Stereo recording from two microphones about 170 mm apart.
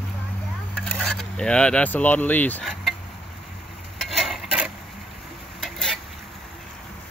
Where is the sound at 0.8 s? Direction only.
5° left (ahead or behind).